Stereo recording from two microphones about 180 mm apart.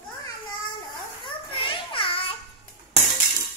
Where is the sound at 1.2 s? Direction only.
30° left (ahead or behind).